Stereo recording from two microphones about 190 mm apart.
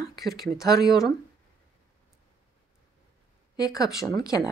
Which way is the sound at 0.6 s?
20° left (ahead or behind).